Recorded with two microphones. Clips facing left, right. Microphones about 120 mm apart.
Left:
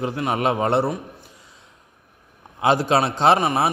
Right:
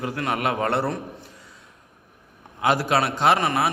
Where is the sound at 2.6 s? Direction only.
25° left (ahead or behind).